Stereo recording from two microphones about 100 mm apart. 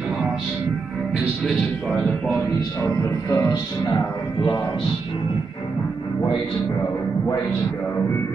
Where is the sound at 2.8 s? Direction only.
30° left (ahead or behind).